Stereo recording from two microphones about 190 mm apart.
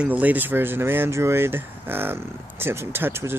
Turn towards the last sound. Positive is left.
turn(degrees=-10)  # may be behind; listen again after turning